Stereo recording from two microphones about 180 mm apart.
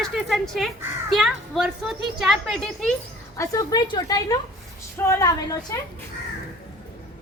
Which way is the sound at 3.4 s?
20° left (ahead or behind).